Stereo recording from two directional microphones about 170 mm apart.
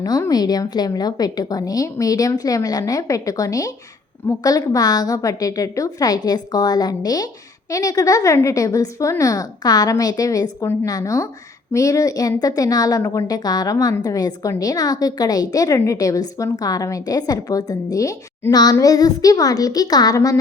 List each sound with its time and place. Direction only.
0.0 s a woman's voice: 20° left (ahead or behind)